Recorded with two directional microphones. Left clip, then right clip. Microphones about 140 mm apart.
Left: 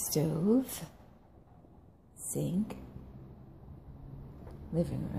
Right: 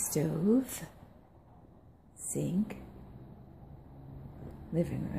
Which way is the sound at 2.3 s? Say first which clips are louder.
Right 1 dB; 5° right (ahead or behind).